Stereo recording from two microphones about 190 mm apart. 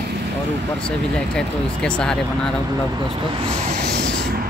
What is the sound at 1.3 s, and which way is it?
Speech, 5° left (ahead or behind).